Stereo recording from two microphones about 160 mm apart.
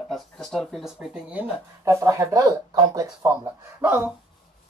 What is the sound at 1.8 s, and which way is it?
Speech, 20° right (ahead or behind).